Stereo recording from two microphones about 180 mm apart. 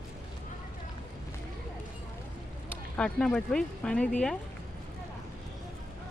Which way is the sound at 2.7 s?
5° left (ahead or behind).